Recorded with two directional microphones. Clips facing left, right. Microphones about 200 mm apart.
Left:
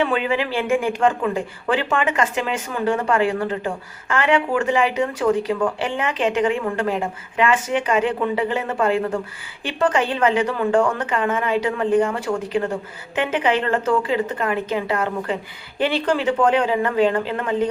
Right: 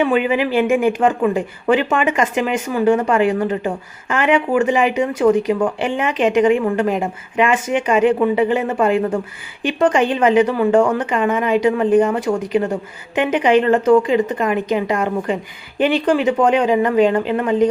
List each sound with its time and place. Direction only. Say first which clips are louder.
0.0 s a woman's voice: right 4 dB; 15° right (ahead or behind)